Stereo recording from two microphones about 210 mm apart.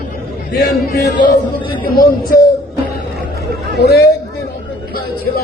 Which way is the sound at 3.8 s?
50° left (ahead or behind).